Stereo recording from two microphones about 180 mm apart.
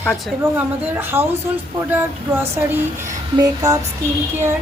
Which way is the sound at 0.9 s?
15° right (ahead or behind).